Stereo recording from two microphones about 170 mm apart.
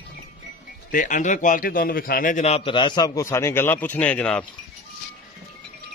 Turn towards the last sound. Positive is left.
turn(degrees=5)  # may be behind; listen again after turning